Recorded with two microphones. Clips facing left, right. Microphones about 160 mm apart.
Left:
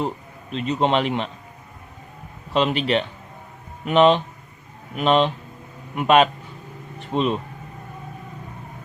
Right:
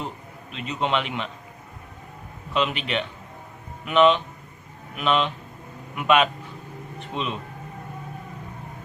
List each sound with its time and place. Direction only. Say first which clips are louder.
0.5 s a man's voice: left 5 dB; 35° left (ahead or behind)
2.5 s a man's voice: left 5 dB; 35° left (ahead or behind)